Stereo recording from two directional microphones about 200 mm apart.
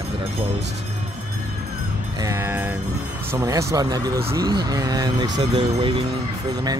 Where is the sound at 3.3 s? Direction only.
15° right (ahead or behind).